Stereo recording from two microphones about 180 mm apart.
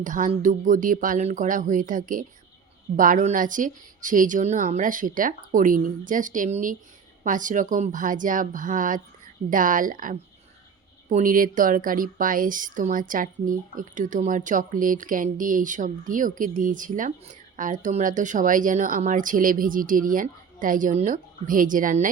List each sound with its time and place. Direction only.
0.0 s a woman's voice: 45° right (ahead or behind)